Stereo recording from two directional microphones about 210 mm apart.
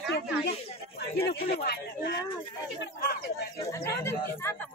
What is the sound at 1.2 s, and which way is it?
Speech, 45° left (ahead or behind).